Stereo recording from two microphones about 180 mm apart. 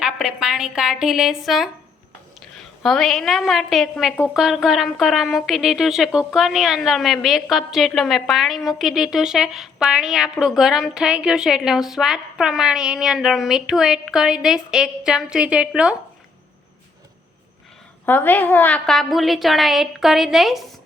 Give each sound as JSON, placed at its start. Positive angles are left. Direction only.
{"t": 0.0, "sound": "a woman's voice", "side_deg": -5}
{"t": 18.0, "sound": "a woman's voice", "side_deg": 10}